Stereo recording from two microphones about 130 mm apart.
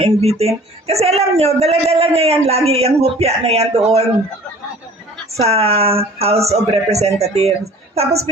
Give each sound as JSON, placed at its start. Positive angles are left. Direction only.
{"t": 0.0, "sound": "speech", "side_deg": -55}
{"t": 5.4, "sound": "speech", "side_deg": -50}